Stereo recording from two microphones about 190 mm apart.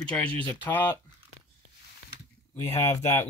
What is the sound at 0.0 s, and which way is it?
Speech, 5° left (ahead or behind).